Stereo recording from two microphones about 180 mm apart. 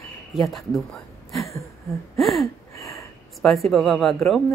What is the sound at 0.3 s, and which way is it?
Speech, centre (ahead or behind).